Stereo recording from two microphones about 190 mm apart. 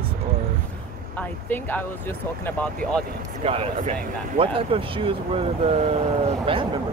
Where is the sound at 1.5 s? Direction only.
10° left (ahead or behind).